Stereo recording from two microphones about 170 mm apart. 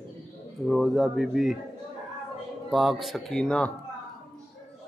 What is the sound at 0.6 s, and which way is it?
Speech, centre (ahead or behind).